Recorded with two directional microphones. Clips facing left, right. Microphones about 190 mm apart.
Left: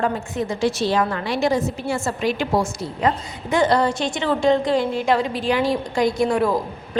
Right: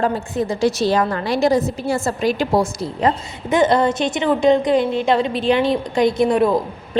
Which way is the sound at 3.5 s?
20° right (ahead or behind).